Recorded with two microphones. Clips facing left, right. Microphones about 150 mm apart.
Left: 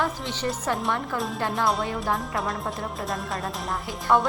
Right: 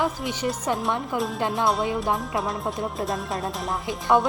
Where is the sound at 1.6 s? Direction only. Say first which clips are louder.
Right 2 dB; centre (ahead or behind).